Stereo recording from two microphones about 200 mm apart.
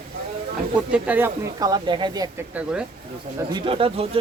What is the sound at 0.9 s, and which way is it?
Speech, 10° right (ahead or behind).